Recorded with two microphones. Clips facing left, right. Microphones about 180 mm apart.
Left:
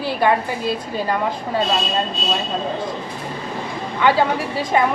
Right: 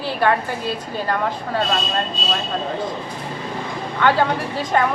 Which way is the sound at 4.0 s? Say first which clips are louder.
Left 1 dB; 10° left (ahead or behind).